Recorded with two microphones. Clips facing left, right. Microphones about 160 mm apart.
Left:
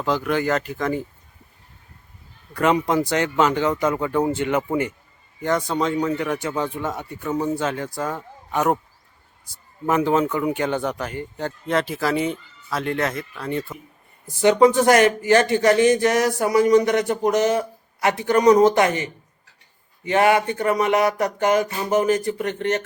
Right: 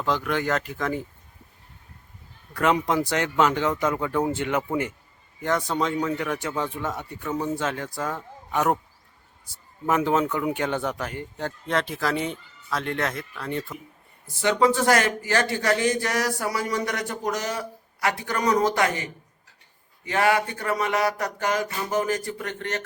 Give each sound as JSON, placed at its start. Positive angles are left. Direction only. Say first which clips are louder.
{"t": 0.0, "sound": "speech", "louder": "left 3 dB", "side_deg": 5}
{"t": 2.5, "sound": "speech", "louder": "left 3 dB", "side_deg": 0}
{"t": 14.4, "sound": "speech", "louder": "left 6 dB", "side_deg": 20}